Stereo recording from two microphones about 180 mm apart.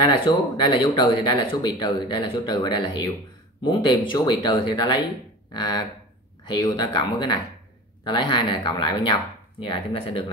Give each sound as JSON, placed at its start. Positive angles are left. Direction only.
{"t": 0.0, "sound": "speech", "side_deg": 25}